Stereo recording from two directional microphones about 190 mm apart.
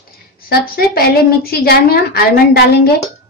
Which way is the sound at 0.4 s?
50° left (ahead or behind).